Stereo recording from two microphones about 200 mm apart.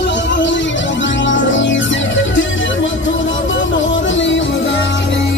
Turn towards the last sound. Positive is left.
turn(degrees=65)  # may be behind; listen again after turning